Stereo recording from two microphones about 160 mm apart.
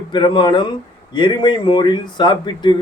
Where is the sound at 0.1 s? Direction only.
30° left (ahead or behind).